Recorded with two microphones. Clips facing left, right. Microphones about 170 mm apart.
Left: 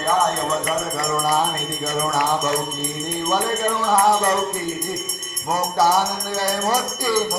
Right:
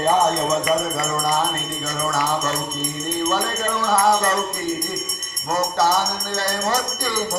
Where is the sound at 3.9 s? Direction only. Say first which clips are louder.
Even; 10° left (ahead or behind).